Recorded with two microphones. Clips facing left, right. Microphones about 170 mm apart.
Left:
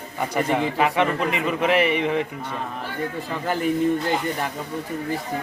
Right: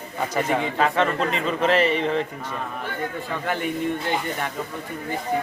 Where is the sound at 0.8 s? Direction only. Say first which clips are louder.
Even; 15° left (ahead or behind).